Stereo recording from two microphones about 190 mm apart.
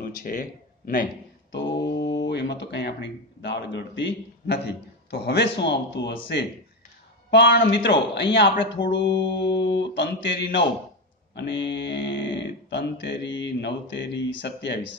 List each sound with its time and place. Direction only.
0.0 s speech: 45° left (ahead or behind)
1.5 s a sound: 65° left (ahead or behind)
2.2 s a man's voice: 65° left (ahead or behind)
9.1 s mantra: 25° left (ahead or behind)
9.8 s speech: 70° left (ahead or behind)